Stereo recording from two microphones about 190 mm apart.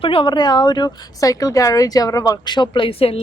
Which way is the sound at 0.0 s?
25° left (ahead or behind).